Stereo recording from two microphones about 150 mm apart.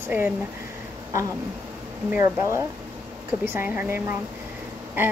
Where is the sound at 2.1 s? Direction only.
15° right (ahead or behind).